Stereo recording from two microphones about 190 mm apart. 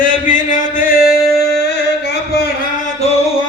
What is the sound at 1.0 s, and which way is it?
Music, centre (ahead or behind).